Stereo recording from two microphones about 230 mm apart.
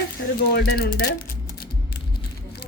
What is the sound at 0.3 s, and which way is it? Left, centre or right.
Speech, left.